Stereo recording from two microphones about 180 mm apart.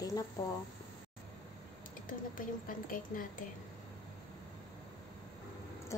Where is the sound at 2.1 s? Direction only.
50° left (ahead or behind).